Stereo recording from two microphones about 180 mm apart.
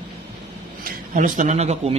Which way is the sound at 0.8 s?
50° right (ahead or behind).